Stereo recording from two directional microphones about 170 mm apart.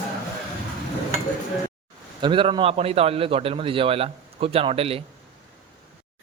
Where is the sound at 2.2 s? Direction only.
30° right (ahead or behind).